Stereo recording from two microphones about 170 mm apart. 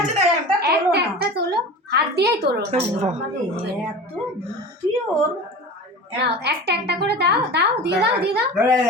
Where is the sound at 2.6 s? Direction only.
40° right (ahead or behind).